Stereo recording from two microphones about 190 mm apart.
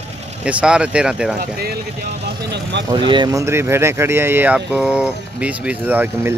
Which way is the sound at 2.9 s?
25° right (ahead or behind).